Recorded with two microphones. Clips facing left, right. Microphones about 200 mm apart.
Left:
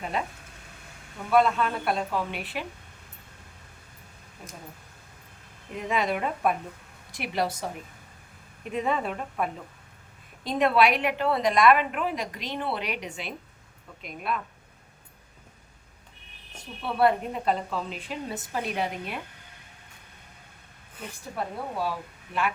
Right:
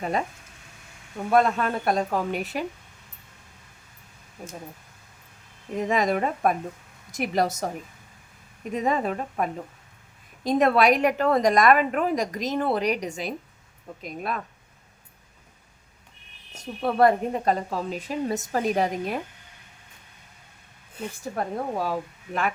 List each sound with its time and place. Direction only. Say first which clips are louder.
1.3 s a woman's voice: right 1 dB; 45° right (ahead or behind)
5.7 s a woman's voice: right 4 dB; 45° right (ahead or behind)
8.7 s a woman's voice: right 3 dB; 40° right (ahead or behind)
16.6 s a woman's voice: right 4 dB; 40° right (ahead or behind)
21.3 s a woman's voice: right 3 dB; 45° right (ahead or behind)